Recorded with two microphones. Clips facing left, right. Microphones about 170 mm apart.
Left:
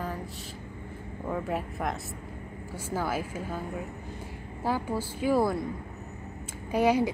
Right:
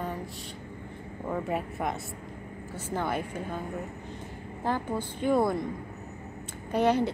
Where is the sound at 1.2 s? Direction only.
Centre (ahead or behind).